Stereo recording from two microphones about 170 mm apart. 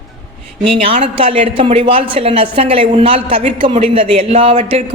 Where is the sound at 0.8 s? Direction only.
35° right (ahead or behind).